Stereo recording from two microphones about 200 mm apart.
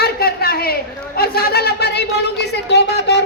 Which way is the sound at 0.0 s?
50° left (ahead or behind).